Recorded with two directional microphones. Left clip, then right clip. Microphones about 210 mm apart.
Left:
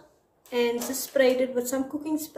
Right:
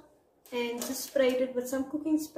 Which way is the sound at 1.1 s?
30° left (ahead or behind).